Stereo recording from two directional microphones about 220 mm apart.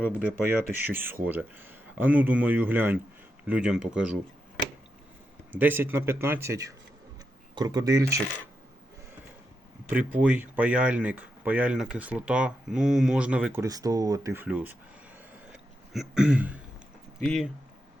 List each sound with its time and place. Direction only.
0.1 s speech: 5° right (ahead or behind)
5.5 s speech: 10° right (ahead or behind)
9.9 s speech: 5° right (ahead or behind)
15.5 s a sound: centre (ahead or behind)
17.2 s speech: centre (ahead or behind)